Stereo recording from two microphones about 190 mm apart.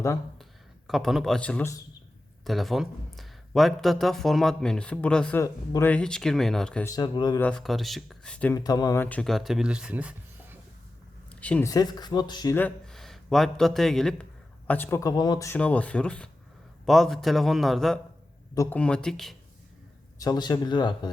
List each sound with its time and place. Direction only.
0.9 s speech: centre (ahead or behind)
6.8 s speech: 20° left (ahead or behind)
7.4 s speech: 5° left (ahead or behind)
8.5 s speech: 20° left (ahead or behind); by 10.6 s 10° right (ahead or behind)
11.3 s a sound: 5° left (ahead or behind)
11.7 s speech: 20° left (ahead or behind)
12.5 s speech: 5° left (ahead or behind)
18.5 s speech: 15° left (ahead or behind)
18.8 s speech: 5° left (ahead or behind)
20.1 s speech: 20° left (ahead or behind)